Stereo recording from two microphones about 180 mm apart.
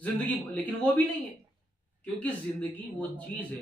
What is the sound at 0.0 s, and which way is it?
A man's voice, 10° left (ahead or behind).